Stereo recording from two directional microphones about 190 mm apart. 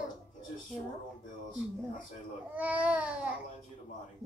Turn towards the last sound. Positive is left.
turn(degrees=-5)  # may be behind; listen again after turning